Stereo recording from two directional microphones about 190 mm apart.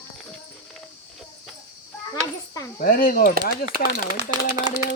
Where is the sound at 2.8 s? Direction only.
50° left (ahead or behind).